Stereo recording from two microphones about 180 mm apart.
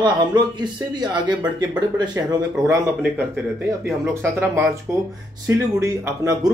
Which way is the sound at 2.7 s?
10° right (ahead or behind).